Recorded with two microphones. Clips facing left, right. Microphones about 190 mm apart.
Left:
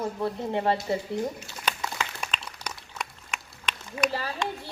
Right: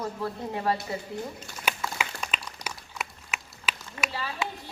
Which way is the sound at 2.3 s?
5° right (ahead or behind).